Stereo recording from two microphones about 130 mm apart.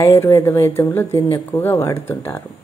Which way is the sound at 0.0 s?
20° left (ahead or behind).